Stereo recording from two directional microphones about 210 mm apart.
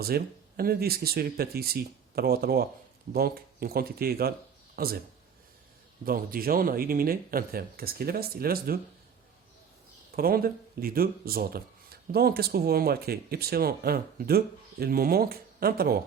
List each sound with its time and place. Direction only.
0.0 s speech: 45° right (ahead or behind)
6.1 s speech: 45° right (ahead or behind)
10.2 s speech: 45° right (ahead or behind)